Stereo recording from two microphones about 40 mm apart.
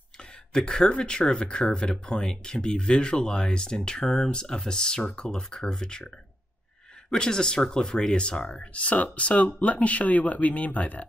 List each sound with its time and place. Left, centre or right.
0.2 s speech: centre; by 11.1 s left